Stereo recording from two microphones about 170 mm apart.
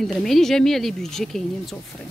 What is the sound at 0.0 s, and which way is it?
Speech, centre (ahead or behind).